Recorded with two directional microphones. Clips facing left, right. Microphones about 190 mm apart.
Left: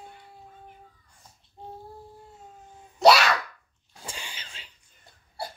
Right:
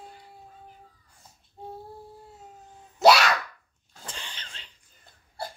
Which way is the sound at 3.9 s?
10° left (ahead or behind).